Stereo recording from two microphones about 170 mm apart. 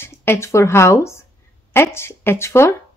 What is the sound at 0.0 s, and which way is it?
A woman's voice, 15° left (ahead or behind).